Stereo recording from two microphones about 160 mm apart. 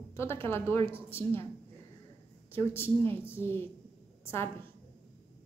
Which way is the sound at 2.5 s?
15° left (ahead or behind).